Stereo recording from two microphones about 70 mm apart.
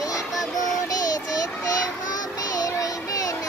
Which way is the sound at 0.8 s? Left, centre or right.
Left.